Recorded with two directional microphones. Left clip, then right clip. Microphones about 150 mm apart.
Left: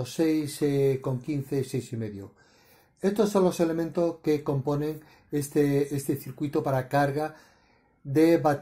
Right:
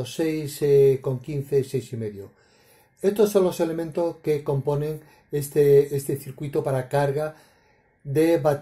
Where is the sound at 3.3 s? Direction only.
45° left (ahead or behind).